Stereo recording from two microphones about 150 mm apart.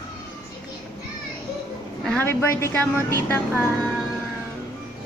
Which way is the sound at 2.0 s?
15° left (ahead or behind).